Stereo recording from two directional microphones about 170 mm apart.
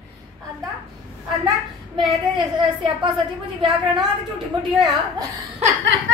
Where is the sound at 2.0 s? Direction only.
30° right (ahead or behind).